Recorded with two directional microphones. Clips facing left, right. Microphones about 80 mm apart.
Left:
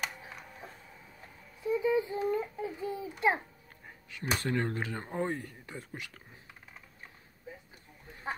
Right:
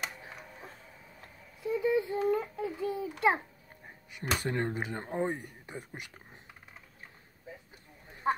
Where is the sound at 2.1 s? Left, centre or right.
Right.